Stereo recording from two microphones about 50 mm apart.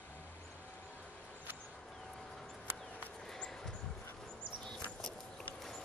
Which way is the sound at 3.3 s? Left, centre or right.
Centre.